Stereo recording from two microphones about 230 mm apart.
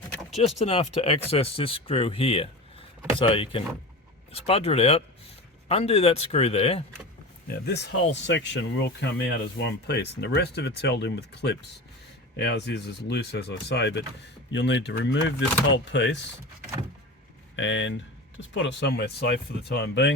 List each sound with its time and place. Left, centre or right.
0.1 s vehicle: centre
0.3 s speech: left
7.5 s speech: left
17.6 s speech: left